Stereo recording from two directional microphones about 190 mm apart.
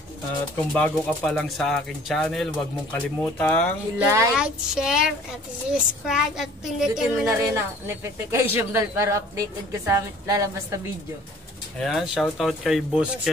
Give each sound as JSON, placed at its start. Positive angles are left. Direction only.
{"t": 0.7, "sound": "speech", "side_deg": 5}
{"t": 4.0, "sound": "speech", "side_deg": -15}
{"t": 4.4, "sound": "speech", "side_deg": -5}
{"t": 7.2, "sound": "speech", "side_deg": -15}
{"t": 11.8, "sound": "speech", "side_deg": 0}